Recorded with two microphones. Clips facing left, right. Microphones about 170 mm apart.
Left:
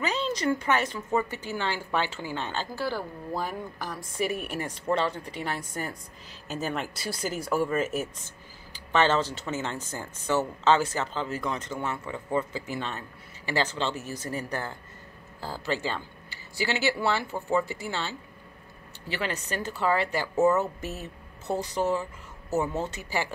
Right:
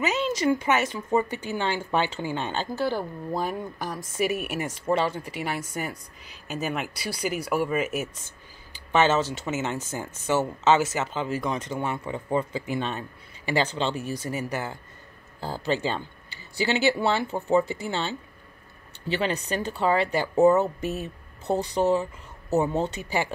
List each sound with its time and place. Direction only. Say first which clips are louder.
0.0 s a woman's voice: right 3 dB; 10° right (ahead or behind)
8.9 s speech: right 2 dB; 10° right (ahead or behind)
10.2 s a woman's voice: right 2 dB; 20° right (ahead or behind)